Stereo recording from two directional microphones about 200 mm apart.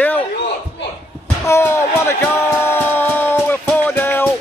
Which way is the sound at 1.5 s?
15° left (ahead or behind).